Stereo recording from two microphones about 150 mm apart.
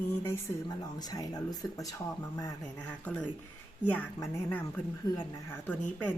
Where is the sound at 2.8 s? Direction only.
5° left (ahead or behind).